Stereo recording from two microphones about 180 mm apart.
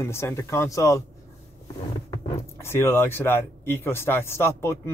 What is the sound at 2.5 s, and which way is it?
Speech, 15° left (ahead or behind).